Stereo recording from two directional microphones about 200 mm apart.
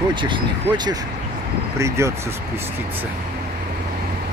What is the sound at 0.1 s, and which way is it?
Speech, 25° right (ahead or behind).